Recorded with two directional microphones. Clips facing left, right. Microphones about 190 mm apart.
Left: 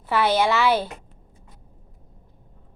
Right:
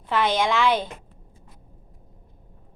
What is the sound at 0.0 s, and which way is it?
Speech, 10° left (ahead or behind).